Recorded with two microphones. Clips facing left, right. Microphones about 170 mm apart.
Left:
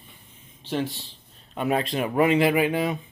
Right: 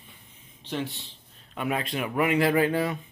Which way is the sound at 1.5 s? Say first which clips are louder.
Left 4 dB; 30° left (ahead or behind).